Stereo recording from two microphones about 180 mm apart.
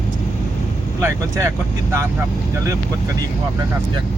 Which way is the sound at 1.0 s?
15° right (ahead or behind).